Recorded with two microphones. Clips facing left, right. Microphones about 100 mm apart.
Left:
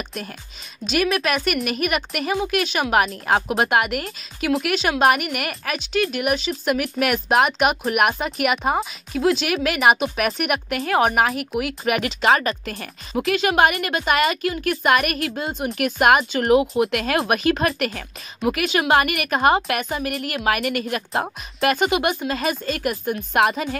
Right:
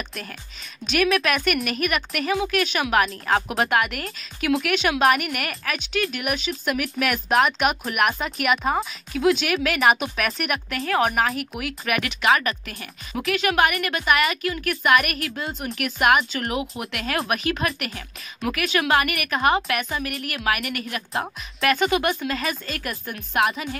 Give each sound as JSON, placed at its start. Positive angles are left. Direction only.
{"t": 1.1, "sound": "speech", "side_deg": 5}
{"t": 11.1, "sound": "speech", "side_deg": 5}
{"t": 11.8, "sound": "a woman's voice", "side_deg": 25}
{"t": 22.1, "sound": "a woman's voice", "side_deg": 30}
{"t": 23.5, "sound": "a woman's voice", "side_deg": 40}